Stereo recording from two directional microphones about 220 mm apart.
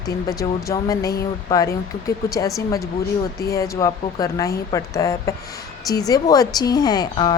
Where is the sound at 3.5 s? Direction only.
15° left (ahead or behind).